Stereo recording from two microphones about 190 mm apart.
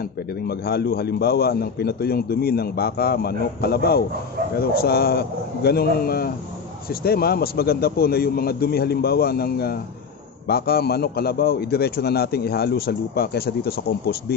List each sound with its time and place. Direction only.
0.5 s a man's voice: 55° left (ahead or behind)